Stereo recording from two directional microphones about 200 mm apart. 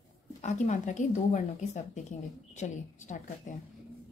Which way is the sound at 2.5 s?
35° left (ahead or behind).